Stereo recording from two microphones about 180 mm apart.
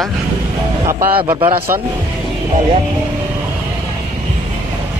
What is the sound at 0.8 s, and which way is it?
Speech, 15° right (ahead or behind).